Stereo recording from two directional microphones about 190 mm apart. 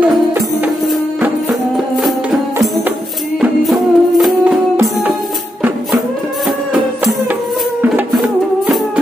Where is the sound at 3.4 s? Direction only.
Centre (ahead or behind).